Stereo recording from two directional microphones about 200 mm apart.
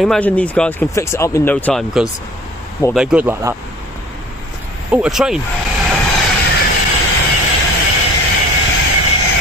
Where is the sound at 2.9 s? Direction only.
5° right (ahead or behind).